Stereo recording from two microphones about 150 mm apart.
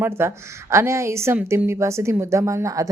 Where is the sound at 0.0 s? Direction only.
15° right (ahead or behind).